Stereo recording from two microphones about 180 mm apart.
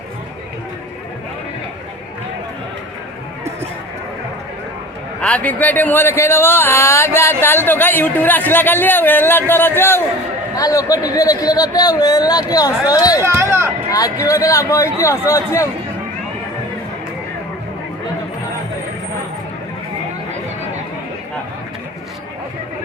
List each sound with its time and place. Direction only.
5.2 s speech: 5° left (ahead or behind)
13.2 s a sound: 15° right (ahead or behind)
14.3 s speech: 15° left (ahead or behind)